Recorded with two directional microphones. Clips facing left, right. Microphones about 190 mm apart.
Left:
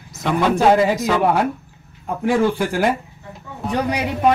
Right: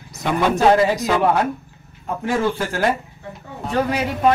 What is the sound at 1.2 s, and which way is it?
Speech, 10° left (ahead or behind).